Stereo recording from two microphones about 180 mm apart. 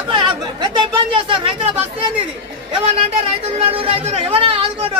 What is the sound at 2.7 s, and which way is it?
Speech, 35° right (ahead or behind).